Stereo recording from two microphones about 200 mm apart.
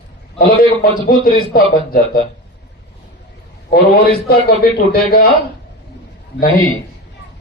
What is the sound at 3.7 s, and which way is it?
A man's voice, 50° left (ahead or behind).